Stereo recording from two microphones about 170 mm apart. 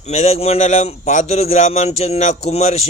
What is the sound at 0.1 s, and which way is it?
A man's voice, 40° left (ahead or behind).